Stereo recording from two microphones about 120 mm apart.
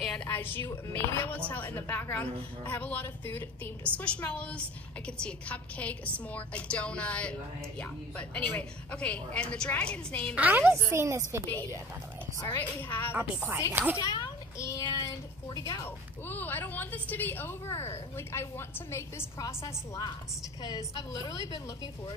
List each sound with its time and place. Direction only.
0.0 s a sound: 5° left (ahead or behind)
0.3 s a woman's voice: 15° left (ahead or behind)
10.3 s a woman's voice: 15° right (ahead or behind)
12.4 s a woman's voice: 15° left (ahead or behind)
13.1 s a woman's voice: 10° right (ahead or behind)
13.9 s children playing: 30° left (ahead or behind)
14.9 s a woman's voice: 30° left (ahead or behind)
16.3 s a woman's voice: 15° left (ahead or behind)